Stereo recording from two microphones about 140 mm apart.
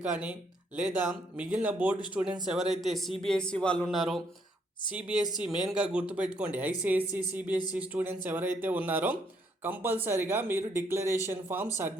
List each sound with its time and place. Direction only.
0.0 s a man's voice: 10° right (ahead or behind)